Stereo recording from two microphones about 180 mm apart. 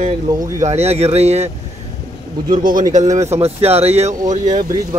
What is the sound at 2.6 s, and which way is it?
Speech, 45° right (ahead or behind).